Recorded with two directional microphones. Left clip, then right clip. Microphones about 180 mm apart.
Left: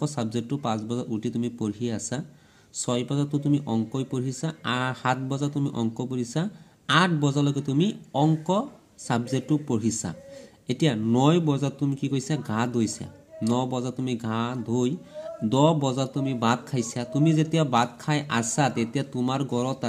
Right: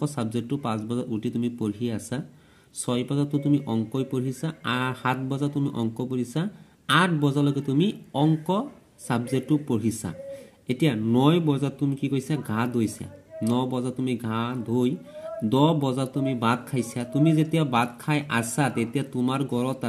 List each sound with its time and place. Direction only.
0.0 s speech: 5° right (ahead or behind)